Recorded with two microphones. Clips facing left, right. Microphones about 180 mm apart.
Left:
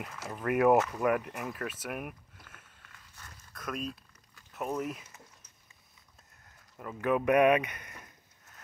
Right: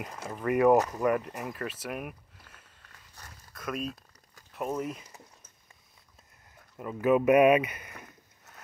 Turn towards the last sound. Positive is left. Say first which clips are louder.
# right 3 dB
turn(degrees=-5)  # may be behind; listen again after turning